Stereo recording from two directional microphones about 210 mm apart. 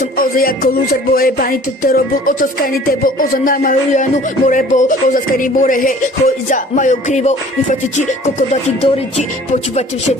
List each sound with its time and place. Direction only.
0.0 s music: 40° left (ahead or behind)